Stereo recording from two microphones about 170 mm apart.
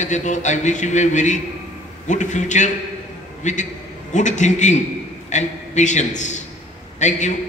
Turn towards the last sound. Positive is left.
turn(degrees=45)  # may be behind; listen again after turning